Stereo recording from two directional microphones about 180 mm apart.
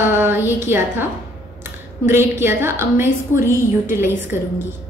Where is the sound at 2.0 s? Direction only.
15° right (ahead or behind).